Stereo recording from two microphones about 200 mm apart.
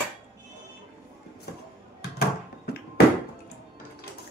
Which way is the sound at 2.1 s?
50° left (ahead or behind).